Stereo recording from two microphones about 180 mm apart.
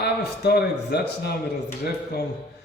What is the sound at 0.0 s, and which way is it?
Speech, 60° left (ahead or behind).